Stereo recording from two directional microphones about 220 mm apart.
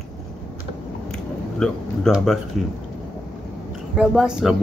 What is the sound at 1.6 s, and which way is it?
Speech, centre (ahead or behind).